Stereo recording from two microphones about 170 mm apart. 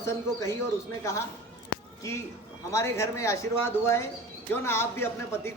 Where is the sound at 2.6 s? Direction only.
15° left (ahead or behind).